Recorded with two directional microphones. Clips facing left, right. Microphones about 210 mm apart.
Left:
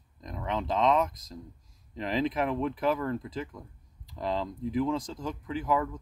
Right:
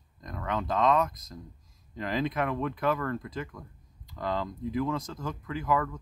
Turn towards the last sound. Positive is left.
turn(degrees=20)  # may be behind; listen again after turning